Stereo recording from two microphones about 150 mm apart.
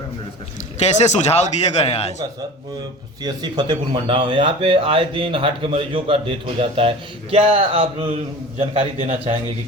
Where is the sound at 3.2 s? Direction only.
30° right (ahead or behind).